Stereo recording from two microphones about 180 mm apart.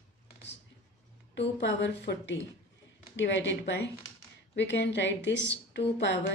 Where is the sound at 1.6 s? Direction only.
80° left.